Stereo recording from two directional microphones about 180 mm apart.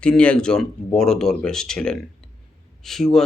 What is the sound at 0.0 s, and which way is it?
Speech, 5° left (ahead or behind).